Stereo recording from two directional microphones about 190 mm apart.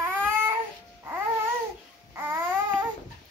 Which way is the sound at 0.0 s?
10° right (ahead or behind).